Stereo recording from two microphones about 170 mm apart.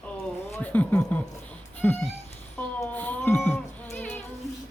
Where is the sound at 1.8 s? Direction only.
10° left (ahead or behind).